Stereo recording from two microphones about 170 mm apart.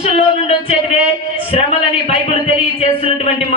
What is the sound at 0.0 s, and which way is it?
Speech, 40° left (ahead or behind).